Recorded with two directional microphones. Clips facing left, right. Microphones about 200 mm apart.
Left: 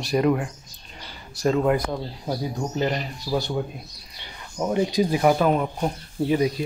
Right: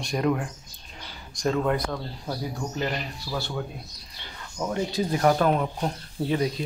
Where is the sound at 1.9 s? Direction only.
20° left (ahead or behind).